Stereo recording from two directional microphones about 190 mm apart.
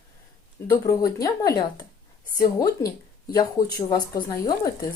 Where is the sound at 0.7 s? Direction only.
20° left (ahead or behind).